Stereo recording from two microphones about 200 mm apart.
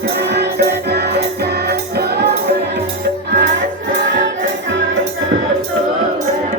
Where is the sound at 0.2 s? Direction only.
55° right (ahead or behind).